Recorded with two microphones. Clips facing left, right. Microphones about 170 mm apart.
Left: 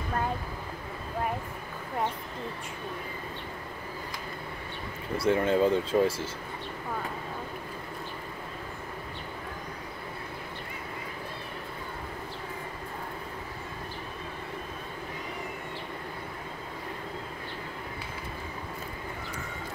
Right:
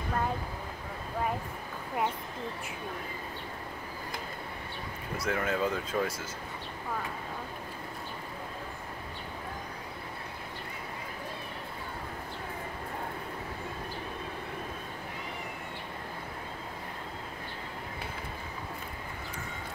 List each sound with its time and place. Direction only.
5.1 s speech: 30° left (ahead or behind)